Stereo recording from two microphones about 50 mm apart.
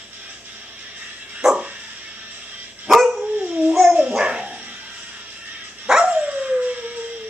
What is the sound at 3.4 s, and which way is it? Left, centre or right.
Dog, right.